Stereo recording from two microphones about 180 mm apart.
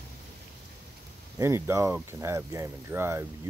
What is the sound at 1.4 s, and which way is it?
Speech, 15° right (ahead or behind).